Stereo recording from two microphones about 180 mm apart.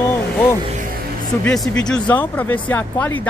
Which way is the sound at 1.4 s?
5° left (ahead or behind).